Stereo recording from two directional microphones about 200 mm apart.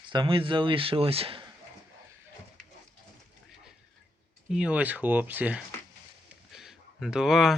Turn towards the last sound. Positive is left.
turn(degrees=0)  # may be behind; listen again after turning